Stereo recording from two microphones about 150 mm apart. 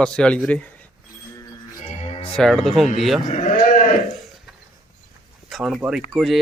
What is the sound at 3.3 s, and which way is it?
Sheep, 60° left (ahead or behind).